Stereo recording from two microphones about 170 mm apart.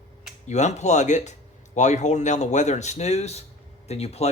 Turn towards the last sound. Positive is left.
turn(degrees=40)  # may be behind; listen again after turning